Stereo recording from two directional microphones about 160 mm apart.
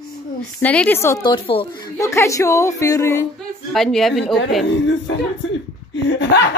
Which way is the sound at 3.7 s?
Centre (ahead or behind).